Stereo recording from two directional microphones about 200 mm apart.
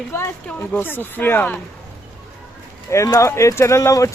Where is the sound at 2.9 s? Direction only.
15° left (ahead or behind).